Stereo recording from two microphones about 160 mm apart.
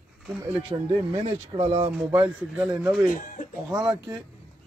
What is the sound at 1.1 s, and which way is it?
Speech, 35° right (ahead or behind).